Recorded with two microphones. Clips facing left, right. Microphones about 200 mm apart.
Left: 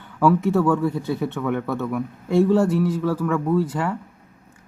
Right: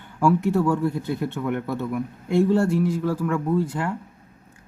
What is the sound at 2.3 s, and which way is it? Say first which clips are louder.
Speech: left 2 dB; centre (ahead or behind).